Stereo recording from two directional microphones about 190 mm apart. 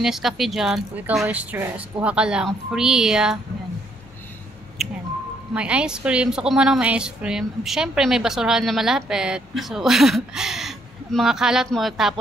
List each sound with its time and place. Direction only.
0.0 s a woman's voice: centre (ahead or behind)
4.8 s a sound: centre (ahead or behind)
5.5 s a woman's voice: 5° right (ahead or behind)